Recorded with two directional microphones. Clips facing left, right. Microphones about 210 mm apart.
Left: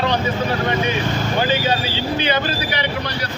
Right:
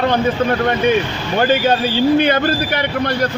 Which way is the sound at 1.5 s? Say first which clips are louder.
Right 5 dB; 55° right (ahead or behind).